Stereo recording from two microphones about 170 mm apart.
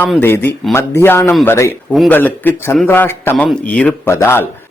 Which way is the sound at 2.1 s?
10° left (ahead or behind).